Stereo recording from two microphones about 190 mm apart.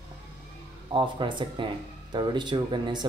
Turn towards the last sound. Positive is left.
turn(degrees=-25)  # may be behind; listen again after turning